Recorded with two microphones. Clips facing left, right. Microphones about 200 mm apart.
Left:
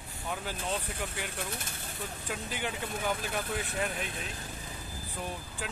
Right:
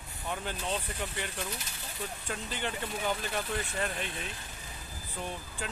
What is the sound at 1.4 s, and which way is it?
Speech, 55° left (ahead or behind).